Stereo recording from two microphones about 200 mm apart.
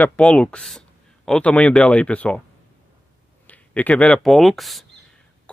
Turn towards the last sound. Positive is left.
turn(degrees=0)  # may be behind; listen again after turning